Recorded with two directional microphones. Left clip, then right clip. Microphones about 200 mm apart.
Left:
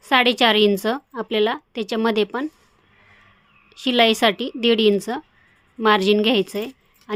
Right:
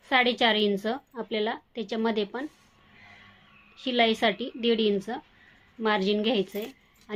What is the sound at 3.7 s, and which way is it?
A woman's voice, 50° left (ahead or behind).